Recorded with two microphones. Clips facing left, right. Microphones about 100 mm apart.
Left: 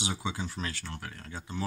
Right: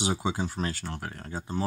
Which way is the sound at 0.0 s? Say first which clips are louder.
Right 6 dB; 45° right (ahead or behind).